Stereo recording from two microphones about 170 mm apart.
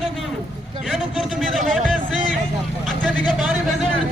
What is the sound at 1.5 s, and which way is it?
Speech, centre (ahead or behind).